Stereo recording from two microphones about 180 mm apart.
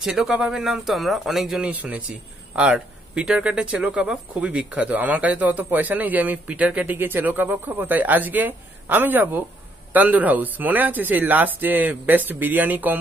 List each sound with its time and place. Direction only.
0.0 s speech: 5° right (ahead or behind)